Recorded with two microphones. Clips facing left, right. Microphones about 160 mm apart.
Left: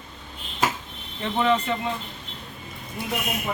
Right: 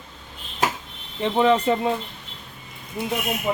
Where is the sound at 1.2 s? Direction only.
30° right (ahead or behind).